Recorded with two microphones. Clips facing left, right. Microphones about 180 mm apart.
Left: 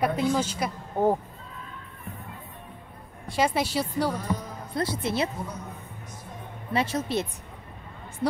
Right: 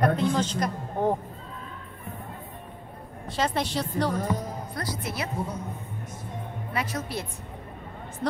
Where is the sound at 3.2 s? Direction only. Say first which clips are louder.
Left 2 dB; 10° left (ahead or behind).